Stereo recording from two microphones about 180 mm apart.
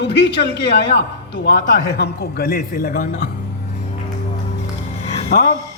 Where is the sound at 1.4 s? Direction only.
65° left (ahead or behind).